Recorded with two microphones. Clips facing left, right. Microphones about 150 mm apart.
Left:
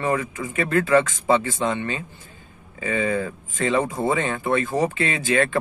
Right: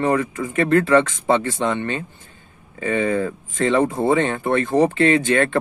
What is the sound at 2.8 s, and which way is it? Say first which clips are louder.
Speech: right 3 dB; 45° right (ahead or behind).